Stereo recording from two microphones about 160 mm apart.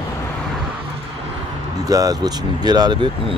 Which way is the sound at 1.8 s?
20° right (ahead or behind).